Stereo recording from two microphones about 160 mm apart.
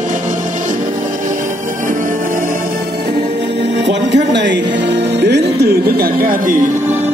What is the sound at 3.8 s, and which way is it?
Music, 90° right.